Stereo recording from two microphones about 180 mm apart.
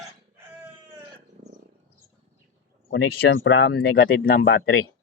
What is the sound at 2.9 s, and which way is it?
Speech, 65° left (ahead or behind).